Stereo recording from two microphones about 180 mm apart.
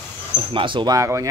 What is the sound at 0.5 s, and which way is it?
Speech, 25° right (ahead or behind).